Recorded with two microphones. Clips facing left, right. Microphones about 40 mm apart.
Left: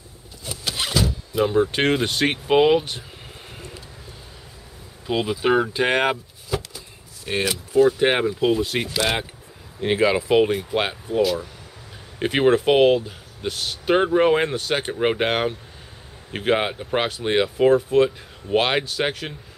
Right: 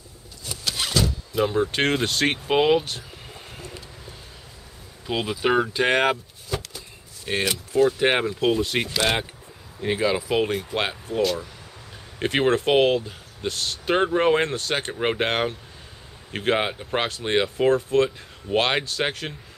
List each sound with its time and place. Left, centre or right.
0.5 s speech: centre
5.0 s speech: centre
9.8 s speech: left
10.3 s speech: centre